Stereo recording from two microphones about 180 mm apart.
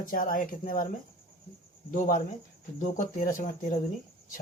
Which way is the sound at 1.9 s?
45° left (ahead or behind).